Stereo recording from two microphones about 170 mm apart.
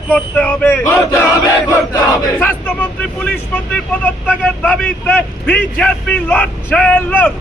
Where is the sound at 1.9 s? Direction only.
20° left (ahead or behind).